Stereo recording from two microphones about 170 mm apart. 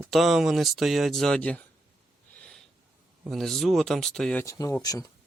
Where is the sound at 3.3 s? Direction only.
Centre (ahead or behind).